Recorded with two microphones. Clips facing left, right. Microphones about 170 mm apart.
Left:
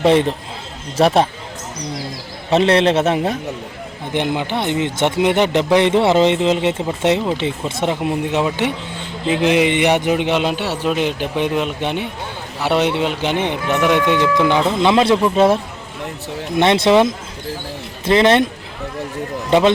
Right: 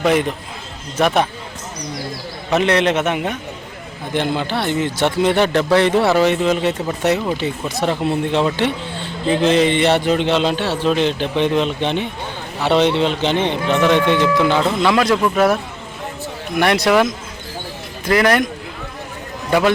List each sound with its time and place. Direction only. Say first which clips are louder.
0.0 s a man's voice: left 3 dB; 30° left (ahead or behind)
2.5 s a man's voice: left 2 dB; 30° left (ahead or behind)
4.1 s a man's voice: even; 15° left (ahead or behind)
19.5 s a man's voice: left 2 dB; 25° left (ahead or behind)